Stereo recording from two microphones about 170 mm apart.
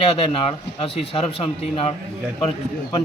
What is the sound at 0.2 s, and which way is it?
Speech, 30° left (ahead or behind).